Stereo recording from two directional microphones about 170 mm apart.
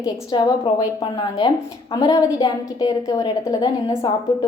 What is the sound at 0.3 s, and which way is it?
Speech, 25° left (ahead or behind).